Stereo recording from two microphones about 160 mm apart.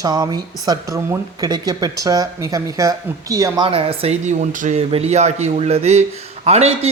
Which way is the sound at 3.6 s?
35° right (ahead or behind).